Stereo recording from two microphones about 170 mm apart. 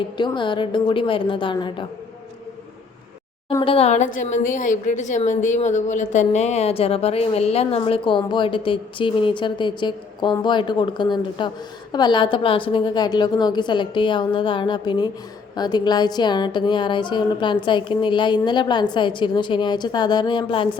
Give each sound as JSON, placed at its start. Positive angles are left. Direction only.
{"t": 0.2, "sound": "a woman's voice", "side_deg": 30}
{"t": 3.6, "sound": "a woman's voice", "side_deg": 35}